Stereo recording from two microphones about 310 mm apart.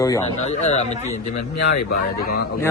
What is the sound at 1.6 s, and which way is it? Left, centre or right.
Speech, left.